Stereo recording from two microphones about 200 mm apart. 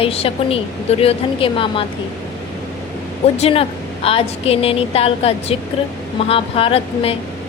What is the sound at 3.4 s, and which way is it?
A woman's voice, 30° left (ahead or behind).